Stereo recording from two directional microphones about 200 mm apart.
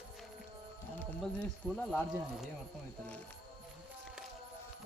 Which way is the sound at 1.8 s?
5° left (ahead or behind).